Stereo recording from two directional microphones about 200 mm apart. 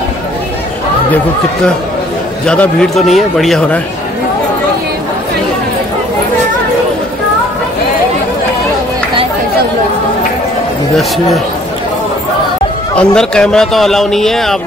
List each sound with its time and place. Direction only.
2.4 s a man's voice: 5° left (ahead or behind)
11.0 s a man's voice: centre (ahead or behind)
12.9 s a man's voice: 5° left (ahead or behind)